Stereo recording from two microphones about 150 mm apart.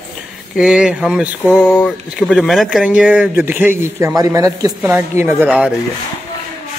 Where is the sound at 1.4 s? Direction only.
10° left (ahead or behind); by 5.3 s 15° right (ahead or behind).